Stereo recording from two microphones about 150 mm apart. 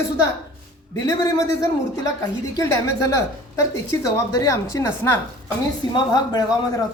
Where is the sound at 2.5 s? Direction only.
20° left (ahead or behind).